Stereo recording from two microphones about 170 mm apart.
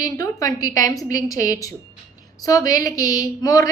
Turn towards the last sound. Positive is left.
turn(degrees=20)  # may be behind; listen again after turning